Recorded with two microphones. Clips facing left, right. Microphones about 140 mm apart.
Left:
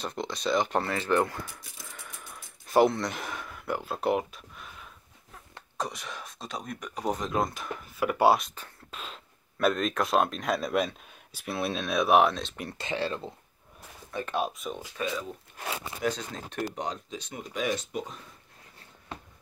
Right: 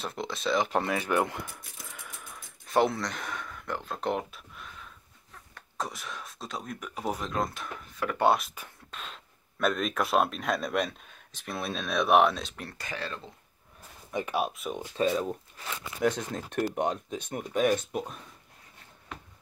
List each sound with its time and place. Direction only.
0.0 s speech: centre (ahead or behind)
0.8 s speech: 10° right (ahead or behind)
2.2 s speech: centre (ahead or behind)
5.8 s speech: centre (ahead or behind)
8.4 s speech: 5° right (ahead or behind)
12.7 s speech: 25° left (ahead or behind)
14.1 s speech: 10° right (ahead or behind)
15.0 s speech: 35° right (ahead or behind)
15.5 s a sound: 60° left (ahead or behind)
16.0 s speech: 55° right (ahead or behind)